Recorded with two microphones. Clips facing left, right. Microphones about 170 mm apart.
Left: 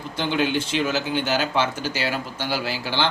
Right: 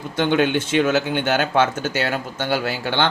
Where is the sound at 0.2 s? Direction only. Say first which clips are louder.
Right 5 dB; 55° right (ahead or behind).